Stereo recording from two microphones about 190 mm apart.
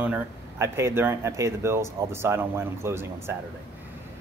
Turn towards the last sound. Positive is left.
turn(degrees=-15)  # may be behind; listen again after turning